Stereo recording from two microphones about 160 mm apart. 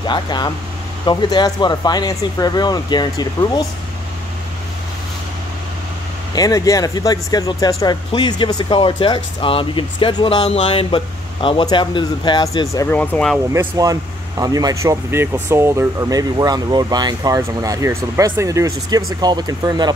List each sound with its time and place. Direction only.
0.0 s speech: 30° left (ahead or behind)
6.3 s speech: 20° left (ahead or behind)
12.9 s speech: 10° left (ahead or behind)
13.5 s speech: 20° right (ahead or behind)